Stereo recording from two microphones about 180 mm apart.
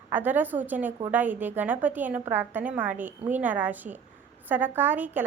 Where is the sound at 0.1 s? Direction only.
10° right (ahead or behind).